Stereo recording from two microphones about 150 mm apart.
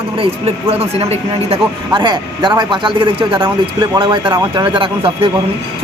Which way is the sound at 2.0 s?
30° right (ahead or behind).